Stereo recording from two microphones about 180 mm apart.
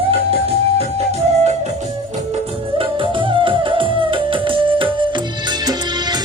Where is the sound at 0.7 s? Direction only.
35° right (ahead or behind).